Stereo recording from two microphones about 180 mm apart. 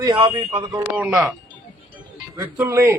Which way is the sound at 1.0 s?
5° right (ahead or behind).